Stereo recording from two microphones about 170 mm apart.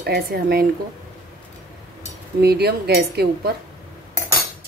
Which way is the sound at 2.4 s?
70° right (ahead or behind).